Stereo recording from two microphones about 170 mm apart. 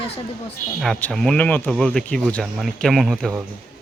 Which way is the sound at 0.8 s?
5° left (ahead or behind).